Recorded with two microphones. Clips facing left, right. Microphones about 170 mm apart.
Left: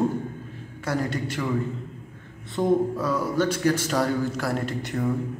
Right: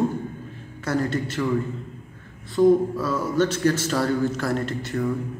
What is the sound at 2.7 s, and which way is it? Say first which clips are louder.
A man's voice: right 2 dB; 15° left (ahead or behind).